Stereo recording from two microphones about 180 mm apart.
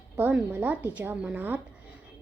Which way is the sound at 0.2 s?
10° right (ahead or behind).